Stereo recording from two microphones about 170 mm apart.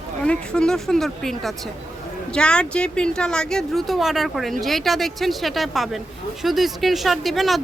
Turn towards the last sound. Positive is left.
turn(degrees=0)  # may be behind; listen again after turning